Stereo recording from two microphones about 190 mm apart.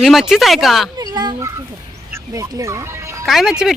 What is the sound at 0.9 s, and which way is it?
Speech, 20° right (ahead or behind).